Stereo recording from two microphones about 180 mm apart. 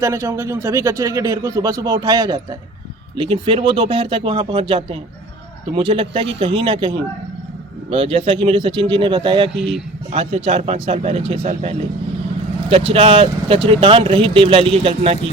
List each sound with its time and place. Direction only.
0.0 s speech: 15° right (ahead or behind)
9.6 s a man's voice: centre (ahead or behind)
10.1 s speech: 35° right (ahead or behind)